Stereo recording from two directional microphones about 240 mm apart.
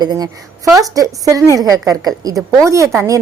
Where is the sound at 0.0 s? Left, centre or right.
Centre.